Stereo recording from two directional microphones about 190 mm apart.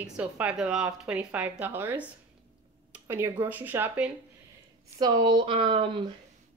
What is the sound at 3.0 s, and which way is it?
A woman's voice, 10° right (ahead or behind).